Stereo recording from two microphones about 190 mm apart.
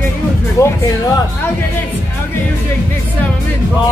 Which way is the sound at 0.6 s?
15° left (ahead or behind).